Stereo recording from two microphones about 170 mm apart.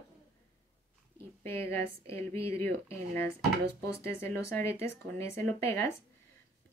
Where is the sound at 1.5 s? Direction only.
15° left (ahead or behind).